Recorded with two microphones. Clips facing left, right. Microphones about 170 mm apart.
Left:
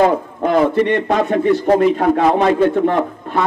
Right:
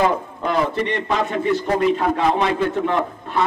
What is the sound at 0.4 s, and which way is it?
A man's voice, 50° left (ahead or behind).